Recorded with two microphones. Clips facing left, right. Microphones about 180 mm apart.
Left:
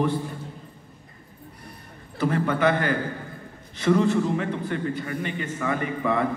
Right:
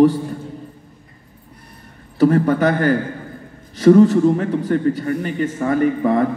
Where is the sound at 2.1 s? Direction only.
40° right (ahead or behind).